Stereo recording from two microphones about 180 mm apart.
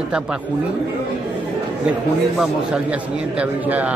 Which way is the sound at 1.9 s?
5° right (ahead or behind).